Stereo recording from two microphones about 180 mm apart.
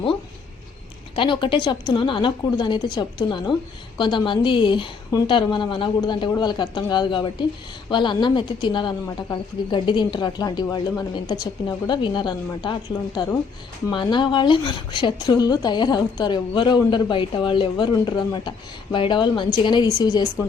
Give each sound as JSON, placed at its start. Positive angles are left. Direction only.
{"t": 1.1, "sound": "a woman's voice", "side_deg": 25}